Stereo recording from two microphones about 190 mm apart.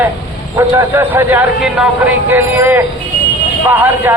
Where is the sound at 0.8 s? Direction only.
10° right (ahead or behind).